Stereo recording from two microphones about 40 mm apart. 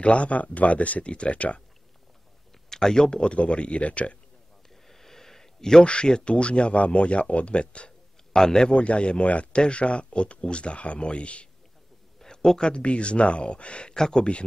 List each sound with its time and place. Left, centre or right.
0.0 s speech: left
2.7 s speech: centre; by 4.2 s left
4.8 s a sound: centre
5.9 s speech: left
8.4 s a man's voice: centre
8.7 s speech: left
12.2 s speech: centre
13.9 s speech: centre